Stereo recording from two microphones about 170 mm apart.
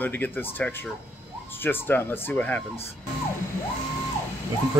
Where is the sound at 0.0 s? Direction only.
10° left (ahead or behind).